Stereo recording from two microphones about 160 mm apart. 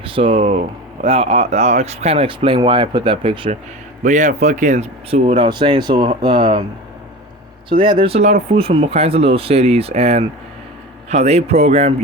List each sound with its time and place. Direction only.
0.0 s speech: 35° right (ahead or behind)
4.0 s speech: 50° right (ahead or behind); by 6.6 s 30° right (ahead or behind)
7.7 s speech: 30° right (ahead or behind)